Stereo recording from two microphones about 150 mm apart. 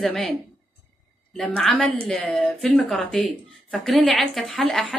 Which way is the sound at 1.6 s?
5° left (ahead or behind).